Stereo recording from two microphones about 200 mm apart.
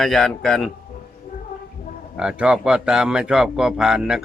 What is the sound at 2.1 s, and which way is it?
A man's voice, 5° right (ahead or behind).